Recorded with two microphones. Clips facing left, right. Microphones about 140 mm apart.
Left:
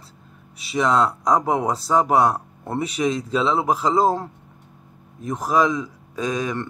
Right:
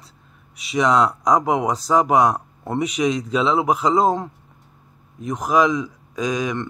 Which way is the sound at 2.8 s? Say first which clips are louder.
Right 2 dB; 30° left (ahead or behind).